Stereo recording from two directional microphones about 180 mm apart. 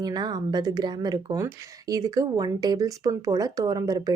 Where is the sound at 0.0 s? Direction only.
20° right (ahead or behind).